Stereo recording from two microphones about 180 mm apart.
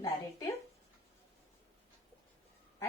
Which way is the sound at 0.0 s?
20° left (ahead or behind).